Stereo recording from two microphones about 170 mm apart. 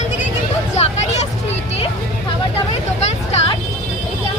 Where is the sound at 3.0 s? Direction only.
40° left (ahead or behind).